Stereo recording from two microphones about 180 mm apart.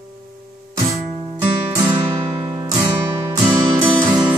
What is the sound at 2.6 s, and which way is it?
Music, 20° right (ahead or behind).